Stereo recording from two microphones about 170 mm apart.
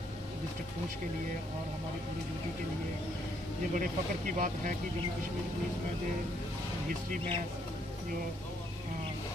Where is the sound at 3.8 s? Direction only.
50° right (ahead or behind).